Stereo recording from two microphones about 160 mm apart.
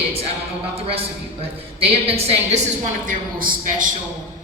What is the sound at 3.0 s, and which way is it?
Speech, 60° right (ahead or behind).